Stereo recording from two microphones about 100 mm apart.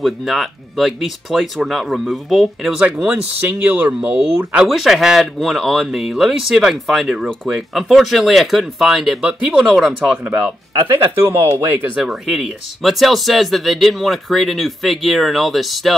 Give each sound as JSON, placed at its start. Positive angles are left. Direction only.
{"t": 0.0, "sound": "speech", "side_deg": 0}
{"t": 2.8, "sound": "speech", "side_deg": -15}
{"t": 10.0, "sound": "speech", "side_deg": -15}
{"t": 11.9, "sound": "speech", "side_deg": -5}